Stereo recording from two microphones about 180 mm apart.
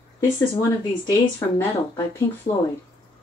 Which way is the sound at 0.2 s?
20° left (ahead or behind).